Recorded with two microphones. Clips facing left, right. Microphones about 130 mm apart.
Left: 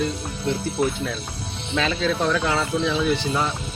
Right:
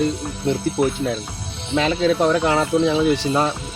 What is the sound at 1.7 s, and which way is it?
Speech, 25° right (ahead or behind).